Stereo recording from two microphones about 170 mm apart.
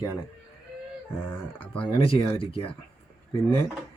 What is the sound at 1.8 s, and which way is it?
Speech, 30° left (ahead or behind).